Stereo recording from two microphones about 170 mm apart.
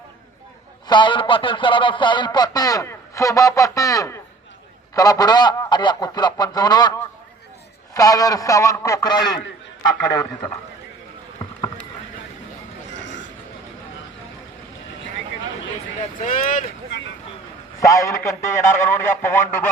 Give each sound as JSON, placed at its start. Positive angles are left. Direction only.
{"t": 0.9, "sound": "speech", "side_deg": 30}
{"t": 12.9, "sound": "a sound", "side_deg": 90}
{"t": 16.0, "sound": "speech", "side_deg": 50}
{"t": 17.7, "sound": "a man's voice", "side_deg": 20}